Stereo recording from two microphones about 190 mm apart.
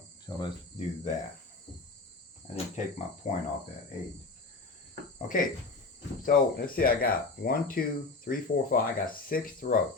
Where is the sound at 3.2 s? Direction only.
40° left (ahead or behind).